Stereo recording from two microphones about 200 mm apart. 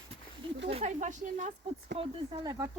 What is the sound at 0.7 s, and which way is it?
Speech, 35° right (ahead or behind).